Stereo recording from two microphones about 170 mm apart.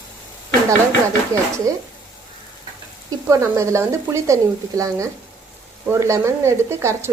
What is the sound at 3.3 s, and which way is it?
Speech, 15° right (ahead or behind).